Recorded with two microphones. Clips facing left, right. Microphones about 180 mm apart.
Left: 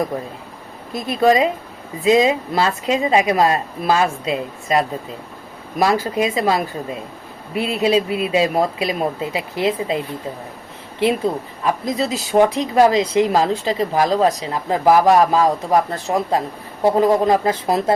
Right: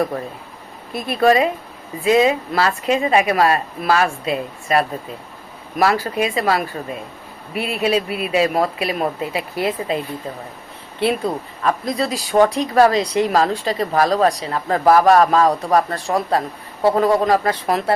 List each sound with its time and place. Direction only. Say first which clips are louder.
1.0 s a woman's voice: even; 20° left (ahead or behind)
11.6 s a woman's voice: even; 20° left (ahead or behind)